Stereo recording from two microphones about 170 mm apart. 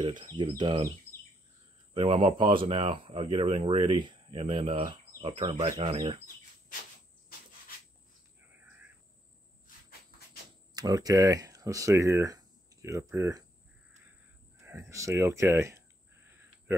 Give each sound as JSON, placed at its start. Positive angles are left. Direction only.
{"t": 0.0, "sound": "speech", "side_deg": -25}
{"t": 2.0, "sound": "speech", "side_deg": -35}
{"t": 10.7, "sound": "speech", "side_deg": -25}
{"t": 14.6, "sound": "speech", "side_deg": -15}